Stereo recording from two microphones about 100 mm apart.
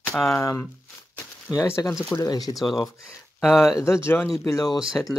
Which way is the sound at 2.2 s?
40° left (ahead or behind).